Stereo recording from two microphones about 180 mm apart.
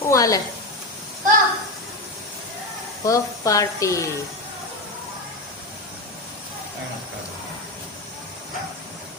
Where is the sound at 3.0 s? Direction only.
15° left (ahead or behind).